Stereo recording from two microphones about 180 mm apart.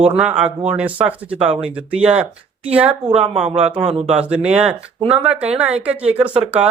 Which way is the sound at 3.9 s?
35° right (ahead or behind).